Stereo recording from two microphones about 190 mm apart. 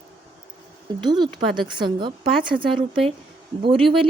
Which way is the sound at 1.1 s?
20° right (ahead or behind).